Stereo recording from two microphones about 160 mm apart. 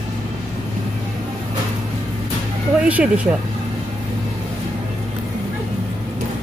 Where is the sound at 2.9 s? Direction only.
10° right (ahead or behind).